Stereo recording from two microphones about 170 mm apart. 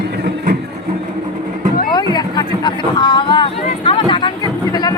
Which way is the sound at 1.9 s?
25° left (ahead or behind).